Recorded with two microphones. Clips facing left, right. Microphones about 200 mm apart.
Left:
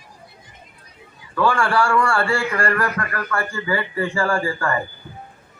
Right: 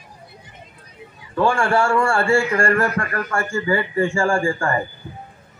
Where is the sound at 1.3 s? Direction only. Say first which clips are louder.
Right 1 dB; 25° right (ahead or behind).